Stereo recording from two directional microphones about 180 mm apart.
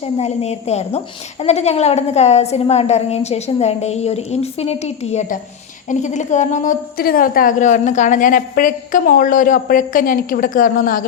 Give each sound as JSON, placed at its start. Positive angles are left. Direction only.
{"t": 0.2, "sound": "a woman's voice", "side_deg": 35}